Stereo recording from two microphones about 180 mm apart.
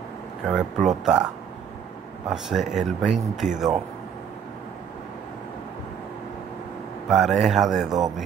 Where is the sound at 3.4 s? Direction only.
40° right (ahead or behind).